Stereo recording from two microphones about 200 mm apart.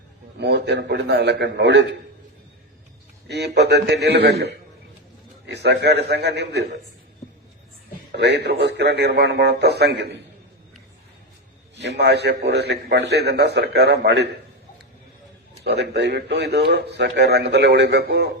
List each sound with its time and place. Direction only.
0.3 s a man's voice: 55° right (ahead or behind)
3.2 s a man's voice: 55° right (ahead or behind)
8.1 s a man's voice: 60° right (ahead or behind)
11.8 s a man's voice: 55° right (ahead or behind)
15.6 s a man's voice: 55° right (ahead or behind)